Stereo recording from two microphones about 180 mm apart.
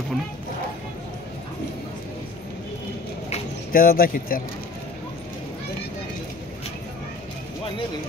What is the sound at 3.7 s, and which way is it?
Speech, 55° left (ahead or behind).